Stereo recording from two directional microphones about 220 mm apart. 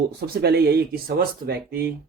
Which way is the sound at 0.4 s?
45° right (ahead or behind).